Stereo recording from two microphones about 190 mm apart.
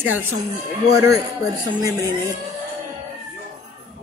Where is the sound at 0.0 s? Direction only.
10° right (ahead or behind).